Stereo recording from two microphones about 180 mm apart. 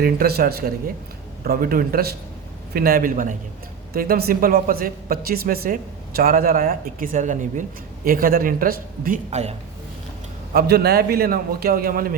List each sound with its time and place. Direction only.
0.0 s a man's voice: 55° right (ahead or behind); by 9.6 s 35° right (ahead or behind)
10.5 s a man's voice: 60° right (ahead or behind)